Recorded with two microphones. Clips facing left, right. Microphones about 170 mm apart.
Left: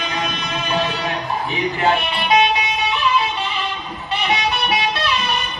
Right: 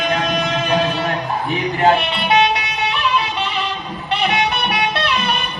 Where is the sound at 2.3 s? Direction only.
70° right (ahead or behind).